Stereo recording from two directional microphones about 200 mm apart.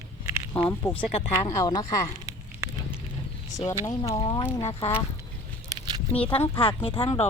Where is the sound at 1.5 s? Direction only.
20° left (ahead or behind).